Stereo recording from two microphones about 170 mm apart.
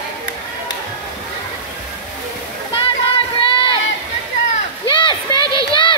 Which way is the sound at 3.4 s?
30° left (ahead or behind).